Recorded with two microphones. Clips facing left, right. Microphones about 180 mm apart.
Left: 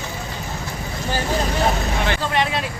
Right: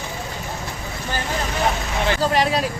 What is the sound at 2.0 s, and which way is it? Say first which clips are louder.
Vehicle: right 5 dB; 40° right (ahead or behind).